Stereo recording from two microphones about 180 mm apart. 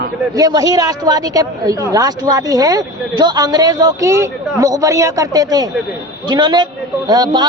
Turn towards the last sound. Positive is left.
turn(degrees=-25)  # may be behind; listen again after turning